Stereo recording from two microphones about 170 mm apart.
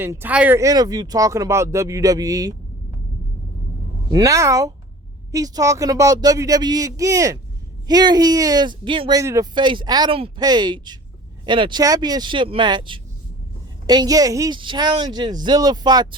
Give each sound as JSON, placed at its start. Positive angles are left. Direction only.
{"t": 0.0, "sound": "speech", "side_deg": -15}
{"t": 4.1, "sound": "speech", "side_deg": -20}